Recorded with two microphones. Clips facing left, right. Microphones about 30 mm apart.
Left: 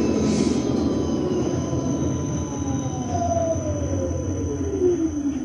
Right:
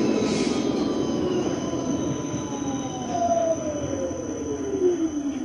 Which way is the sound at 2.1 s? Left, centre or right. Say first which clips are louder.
Left 1 dB; right.